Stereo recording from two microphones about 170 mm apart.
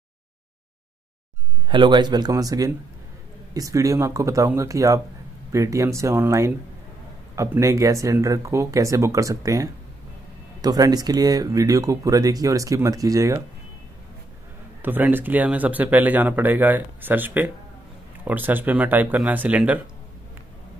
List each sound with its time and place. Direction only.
1.7 s speech: 25° right (ahead or behind)
14.8 s speech: 10° right (ahead or behind)